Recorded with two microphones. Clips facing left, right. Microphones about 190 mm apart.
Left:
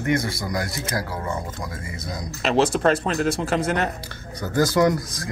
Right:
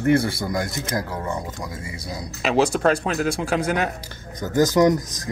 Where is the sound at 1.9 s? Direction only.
10° right (ahead or behind).